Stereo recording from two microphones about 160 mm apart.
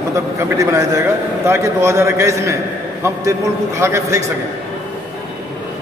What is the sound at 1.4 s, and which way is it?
A man's voice, 15° right (ahead or behind).